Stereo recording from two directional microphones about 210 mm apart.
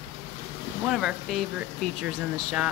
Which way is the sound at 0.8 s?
Centre (ahead or behind).